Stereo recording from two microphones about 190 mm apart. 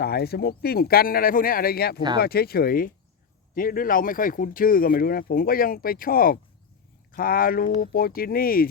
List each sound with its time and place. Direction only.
0.0 s speech: 55° left (ahead or behind)